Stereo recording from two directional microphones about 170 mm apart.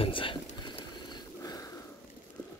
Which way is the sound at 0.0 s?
30° left (ahead or behind).